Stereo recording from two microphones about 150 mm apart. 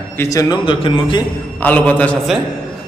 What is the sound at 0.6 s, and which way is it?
Speech, 35° left (ahead or behind).